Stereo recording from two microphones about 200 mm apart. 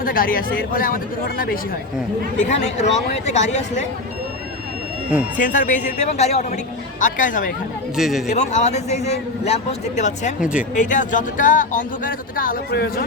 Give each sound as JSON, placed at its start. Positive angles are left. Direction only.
{"t": 0.0, "sound": "speech", "side_deg": 45}
{"t": 2.4, "sound": "speech", "side_deg": 35}
{"t": 5.4, "sound": "speech", "side_deg": 40}
{"t": 7.9, "sound": "a man's voice", "side_deg": 0}
{"t": 8.3, "sound": "speech", "side_deg": 35}
{"t": 10.4, "sound": "a man's voice", "side_deg": -5}
{"t": 10.8, "sound": "speech", "side_deg": 40}